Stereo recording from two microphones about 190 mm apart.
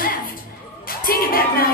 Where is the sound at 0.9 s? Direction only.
50° left (ahead or behind).